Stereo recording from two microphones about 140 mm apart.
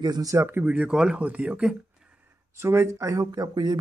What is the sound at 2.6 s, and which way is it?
Speech, 20° right (ahead or behind).